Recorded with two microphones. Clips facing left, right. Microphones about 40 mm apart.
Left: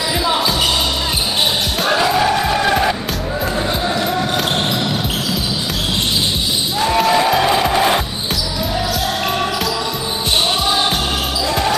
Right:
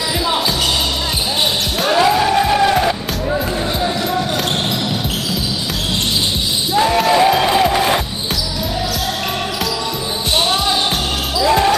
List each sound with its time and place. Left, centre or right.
1.8 s music: centre
6.7 s music: centre
11.4 s basketball bounce: centre